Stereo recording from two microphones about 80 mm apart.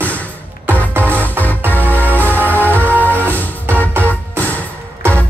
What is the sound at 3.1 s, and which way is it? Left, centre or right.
Music, left.